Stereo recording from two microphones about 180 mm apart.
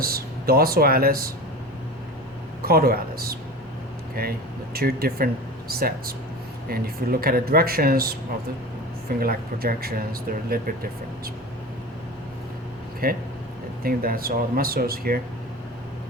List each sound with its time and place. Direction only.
0.0 s speech: 60° right (ahead or behind)
2.6 s speech: 55° right (ahead or behind)
13.0 s speech: 55° right (ahead or behind)